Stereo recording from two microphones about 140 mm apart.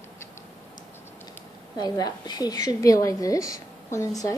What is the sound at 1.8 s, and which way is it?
A woman's voice, 30° left (ahead or behind).